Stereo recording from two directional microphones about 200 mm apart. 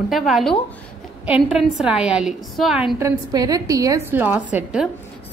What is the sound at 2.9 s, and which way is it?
A woman's voice, 15° right (ahead or behind).